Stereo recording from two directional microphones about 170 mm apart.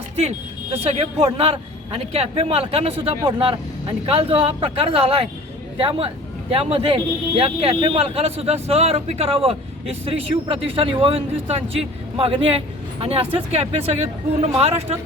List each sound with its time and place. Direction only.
0.2 s speech: 40° right (ahead or behind)